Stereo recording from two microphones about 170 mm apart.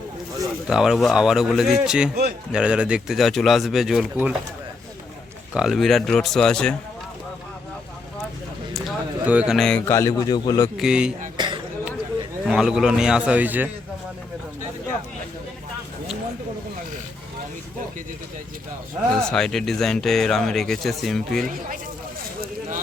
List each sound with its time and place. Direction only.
0.7 s speech: 5° right (ahead or behind)
5.5 s speech: centre (ahead or behind)
8.7 s a sound: 5° right (ahead or behind)
9.8 s a man's voice: 15° left (ahead or behind)
10.8 s speech: 5° right (ahead or behind)
11.3 s a sound: 25° right (ahead or behind)
12.5 s speech: 5° right (ahead or behind)
19.1 s speech: 5° left (ahead or behind)